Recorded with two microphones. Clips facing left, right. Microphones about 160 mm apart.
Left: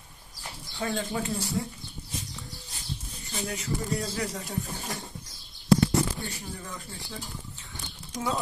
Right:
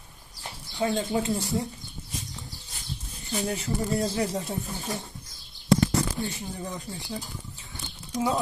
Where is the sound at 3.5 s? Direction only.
35° right (ahead or behind).